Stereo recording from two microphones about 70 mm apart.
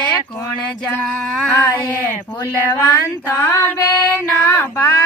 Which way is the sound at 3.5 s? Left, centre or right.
Left.